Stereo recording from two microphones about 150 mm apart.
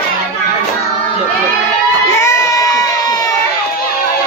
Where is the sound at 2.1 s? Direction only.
20° left (ahead or behind).